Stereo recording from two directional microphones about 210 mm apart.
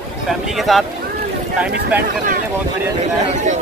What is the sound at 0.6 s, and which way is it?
Speech, centre (ahead or behind).